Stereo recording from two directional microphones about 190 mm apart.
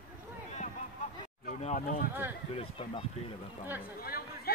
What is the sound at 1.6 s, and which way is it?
Speech, 40° left (ahead or behind).